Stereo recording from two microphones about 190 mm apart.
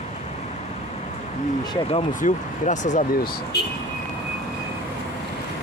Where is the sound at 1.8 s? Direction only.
35° left (ahead or behind).